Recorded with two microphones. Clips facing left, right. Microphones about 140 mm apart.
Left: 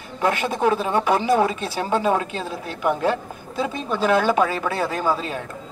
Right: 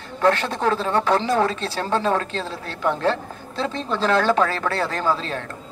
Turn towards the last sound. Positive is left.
turn(degrees=10)  # may be behind; listen again after turning